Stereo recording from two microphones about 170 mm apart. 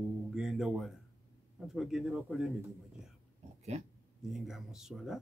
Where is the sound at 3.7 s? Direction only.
45° right (ahead or behind).